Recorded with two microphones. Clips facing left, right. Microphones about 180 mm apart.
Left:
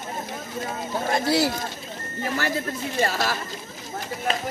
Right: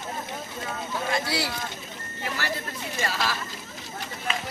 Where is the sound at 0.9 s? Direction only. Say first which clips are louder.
Left 6 dB; 45° left (ahead or behind).